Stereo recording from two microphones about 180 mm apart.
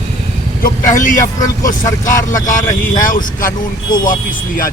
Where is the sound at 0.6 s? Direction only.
45° left (ahead or behind).